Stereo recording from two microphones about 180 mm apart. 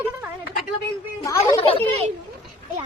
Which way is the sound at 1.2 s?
15° left (ahead or behind).